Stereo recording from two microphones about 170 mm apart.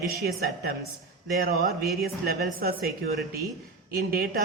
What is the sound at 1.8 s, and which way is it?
Speech, centre (ahead or behind).